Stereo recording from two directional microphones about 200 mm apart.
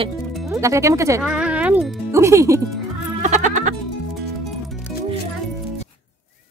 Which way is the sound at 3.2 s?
40° right (ahead or behind).